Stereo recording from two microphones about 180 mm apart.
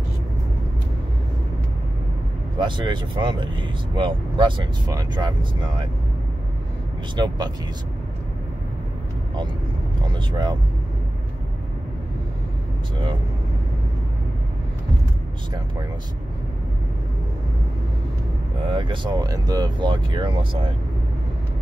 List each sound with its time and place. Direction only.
2.6 s speech: 25° right (ahead or behind)
7.2 s speech: 20° right (ahead or behind)
10.0 s speech: 25° right (ahead or behind)
18.7 s speech: 25° right (ahead or behind)